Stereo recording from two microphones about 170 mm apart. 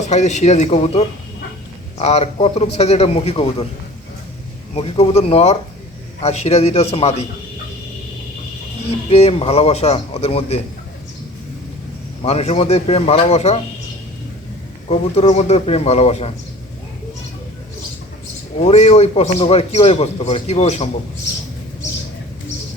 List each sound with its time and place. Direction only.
0.0 s a man's voice: 45° left (ahead or behind)
4.7 s a man's voice: 35° left (ahead or behind)
8.9 s a man's voice: 35° left (ahead or behind)
12.2 s a man's voice: 40° left (ahead or behind)
14.8 s a man's voice: 40° left (ahead or behind)
18.6 s a man's voice: 40° left (ahead or behind)